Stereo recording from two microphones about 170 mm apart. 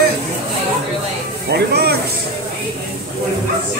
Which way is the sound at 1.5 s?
70° right (ahead or behind).